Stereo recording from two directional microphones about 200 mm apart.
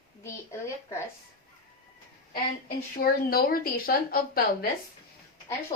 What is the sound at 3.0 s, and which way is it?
A woman's voice, 45° left (ahead or behind).